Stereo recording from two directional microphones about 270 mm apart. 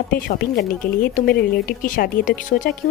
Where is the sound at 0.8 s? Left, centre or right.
Left.